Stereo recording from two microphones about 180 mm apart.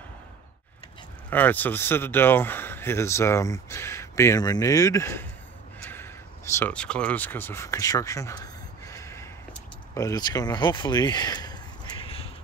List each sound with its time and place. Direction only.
1.3 s speech: 10° left (ahead or behind)
6.5 s speech: 10° left (ahead or behind)
12.0 s crow: 30° left (ahead or behind)